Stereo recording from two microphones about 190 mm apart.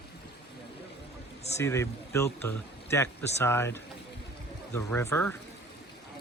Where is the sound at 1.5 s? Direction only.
15° left (ahead or behind).